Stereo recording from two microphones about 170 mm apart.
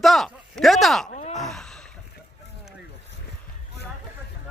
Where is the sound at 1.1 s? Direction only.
45° left (ahead or behind).